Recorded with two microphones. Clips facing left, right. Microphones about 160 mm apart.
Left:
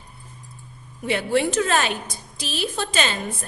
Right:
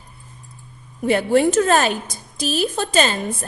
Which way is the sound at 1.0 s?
45° right (ahead or behind).